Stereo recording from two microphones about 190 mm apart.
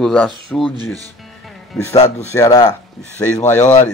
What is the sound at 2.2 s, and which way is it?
Speech, 15° left (ahead or behind).